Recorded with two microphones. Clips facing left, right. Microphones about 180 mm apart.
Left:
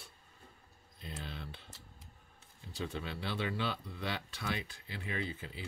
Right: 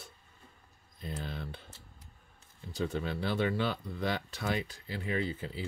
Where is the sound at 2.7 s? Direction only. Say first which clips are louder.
Right 6 dB; 45° right (ahead or behind).